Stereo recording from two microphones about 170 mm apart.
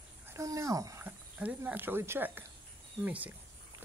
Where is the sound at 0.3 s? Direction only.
15° right (ahead or behind).